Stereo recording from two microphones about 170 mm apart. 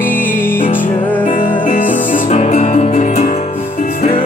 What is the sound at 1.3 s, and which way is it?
Music, 50° left (ahead or behind).